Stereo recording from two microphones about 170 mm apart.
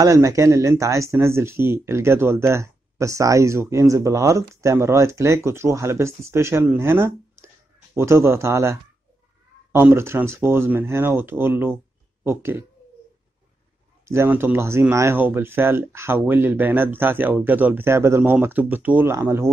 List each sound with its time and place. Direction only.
0.0 s speech: 20° right (ahead or behind)
14.0 s speech: 15° right (ahead or behind)